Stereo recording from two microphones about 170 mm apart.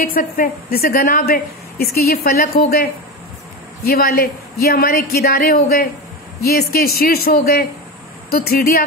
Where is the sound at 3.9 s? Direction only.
65° left (ahead or behind).